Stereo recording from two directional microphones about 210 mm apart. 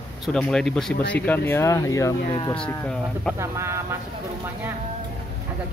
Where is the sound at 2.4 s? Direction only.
25° left (ahead or behind).